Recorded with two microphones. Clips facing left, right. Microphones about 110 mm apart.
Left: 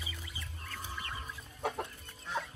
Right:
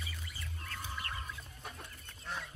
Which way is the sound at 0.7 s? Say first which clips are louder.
Even; 10° left (ahead or behind).